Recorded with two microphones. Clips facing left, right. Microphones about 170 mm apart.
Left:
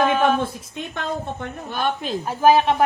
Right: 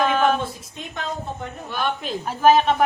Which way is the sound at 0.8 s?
60° left (ahead or behind).